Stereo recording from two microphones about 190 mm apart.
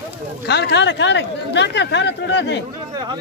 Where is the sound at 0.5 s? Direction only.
60° left (ahead or behind).